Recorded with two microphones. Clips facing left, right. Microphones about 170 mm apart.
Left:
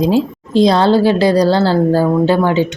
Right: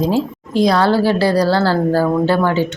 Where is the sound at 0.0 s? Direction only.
15° left (ahead or behind).